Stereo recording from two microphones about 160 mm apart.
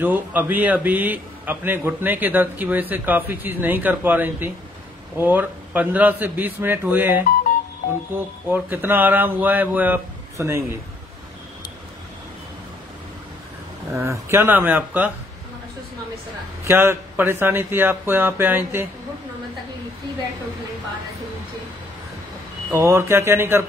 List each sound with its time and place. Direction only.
0.0 s a man's voice: 10° right (ahead or behind)
13.9 s a man's voice: 15° right (ahead or behind)
16.6 s a man's voice: 15° right (ahead or behind)
22.7 s a man's voice: 15° right (ahead or behind)